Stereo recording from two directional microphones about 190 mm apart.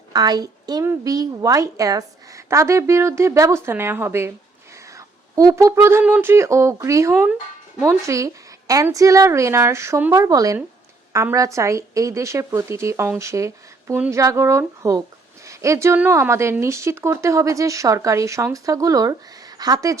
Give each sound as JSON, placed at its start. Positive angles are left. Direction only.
{"t": 0.1, "sound": "a woman's voice", "side_deg": -20}